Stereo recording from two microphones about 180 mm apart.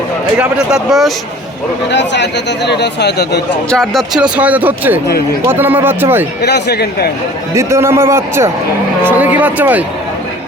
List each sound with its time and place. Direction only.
0.3 s speech: 5° right (ahead or behind)
1.9 s speech: 75° left (ahead or behind)
3.7 s speech: centre (ahead or behind)
6.4 s speech: 65° left (ahead or behind)
7.5 s speech: 15° right (ahead or behind)